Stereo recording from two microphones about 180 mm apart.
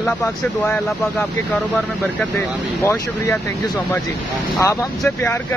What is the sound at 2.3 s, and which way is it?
Speech, 15° left (ahead or behind).